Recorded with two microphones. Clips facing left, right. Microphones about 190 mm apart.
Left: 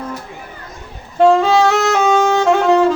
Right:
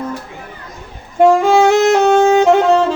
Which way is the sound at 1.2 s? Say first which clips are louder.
Right 1 dB; 15° right (ahead or behind).